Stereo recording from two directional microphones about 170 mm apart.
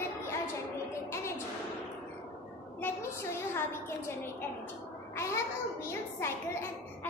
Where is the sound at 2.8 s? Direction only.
15° left (ahead or behind).